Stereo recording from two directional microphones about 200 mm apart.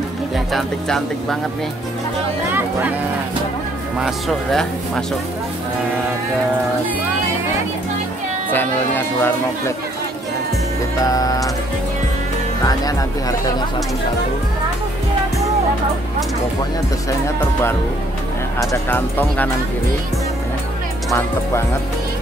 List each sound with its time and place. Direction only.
0.5 s speech: centre (ahead or behind)
4.0 s speech: centre (ahead or behind)
8.5 s speech: 10° left (ahead or behind)
11.1 s speech: 15° left (ahead or behind)
18.6 s speech: 15° left (ahead or behind)